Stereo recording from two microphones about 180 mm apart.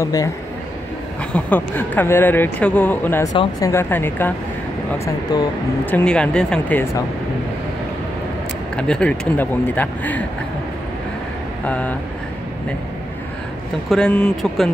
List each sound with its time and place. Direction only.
0.0 s speech: 20° left (ahead or behind)
1.3 s speech: 10° left (ahead or behind)
8.7 s speech: 5° left (ahead or behind)
11.6 s speech: 10° left (ahead or behind)
13.8 s speech: 5° left (ahead or behind)